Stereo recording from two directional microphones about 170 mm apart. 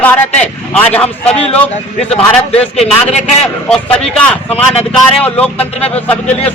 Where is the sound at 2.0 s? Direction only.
35° left (ahead or behind).